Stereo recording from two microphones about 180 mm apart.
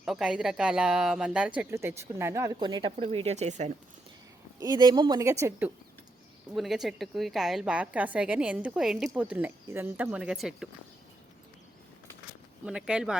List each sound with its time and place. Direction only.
0.0 s speech: 5° right (ahead or behind); by 3.7 s 40° right (ahead or behind)
4.6 s a woman's voice: 25° right (ahead or behind); by 10.7 s centre (ahead or behind)
12.6 s a woman's voice: 5° right (ahead or behind)